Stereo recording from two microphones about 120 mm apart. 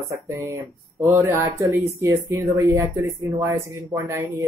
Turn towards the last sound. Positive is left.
turn(degrees=-25)  # may be behind; listen again after turning